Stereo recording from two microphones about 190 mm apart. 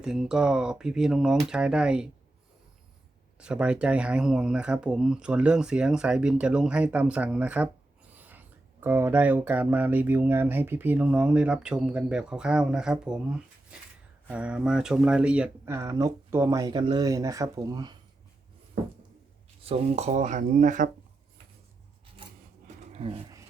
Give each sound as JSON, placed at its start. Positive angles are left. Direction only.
{"t": 0.0, "sound": "speech", "side_deg": -5}
{"t": 3.3, "sound": "speech", "side_deg": -5}
{"t": 19.6, "sound": "speech", "side_deg": -35}
{"t": 22.6, "sound": "a sound", "side_deg": -35}